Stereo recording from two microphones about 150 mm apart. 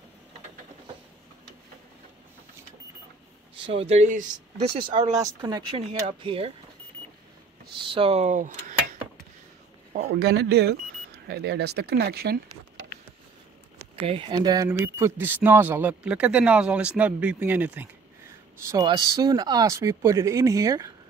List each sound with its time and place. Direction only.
3.6 s speech: 40° right (ahead or behind)
4.6 s speech: 35° right (ahead or behind)
6.0 s speech: 40° right (ahead or behind)
7.8 s speech: 35° right (ahead or behind); by 8.7 s 55° right (ahead or behind)
10.1 s speech: 90° right
14.0 s speech: 35° right (ahead or behind); by 17.8 s 10° right (ahead or behind)
18.7 s speech: 25° right (ahead or behind)